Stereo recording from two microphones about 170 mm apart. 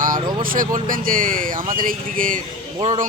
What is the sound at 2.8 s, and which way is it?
Speech, 40° right (ahead or behind).